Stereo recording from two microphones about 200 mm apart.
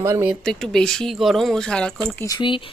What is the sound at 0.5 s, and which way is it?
A woman's voice, centre (ahead or behind).